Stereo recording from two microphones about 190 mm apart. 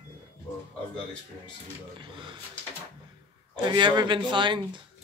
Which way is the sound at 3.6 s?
25° right (ahead or behind).